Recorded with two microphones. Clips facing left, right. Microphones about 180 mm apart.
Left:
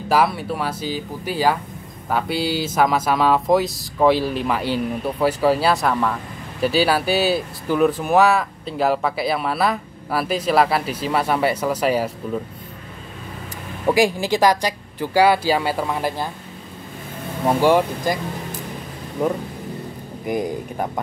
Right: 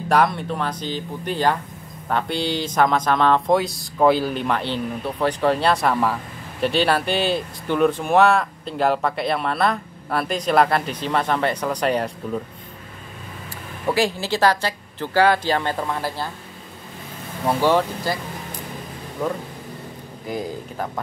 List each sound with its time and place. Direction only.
0.1 s speech: 5° left (ahead or behind)
13.9 s speech: 15° left (ahead or behind)
17.5 s speech: 15° left (ahead or behind)